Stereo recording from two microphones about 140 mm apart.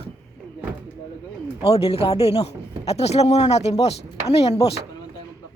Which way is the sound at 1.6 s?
45° left (ahead or behind).